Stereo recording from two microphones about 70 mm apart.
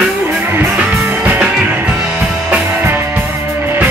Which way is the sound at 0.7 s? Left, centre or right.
Centre.